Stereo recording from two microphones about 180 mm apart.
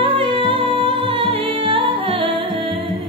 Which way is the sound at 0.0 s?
30° right (ahead or behind).